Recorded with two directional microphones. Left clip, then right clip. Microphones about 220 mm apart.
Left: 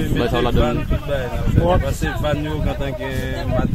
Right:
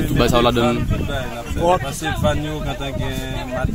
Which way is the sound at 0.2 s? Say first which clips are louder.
Right 5 dB; 45° right (ahead or behind).